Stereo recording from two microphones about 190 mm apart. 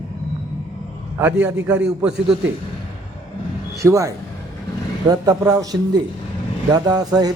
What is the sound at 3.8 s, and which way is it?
A man's voice, 15° right (ahead or behind).